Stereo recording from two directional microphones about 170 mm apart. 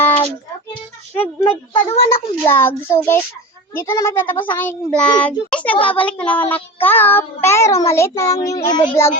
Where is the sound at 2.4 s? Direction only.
10° left (ahead or behind).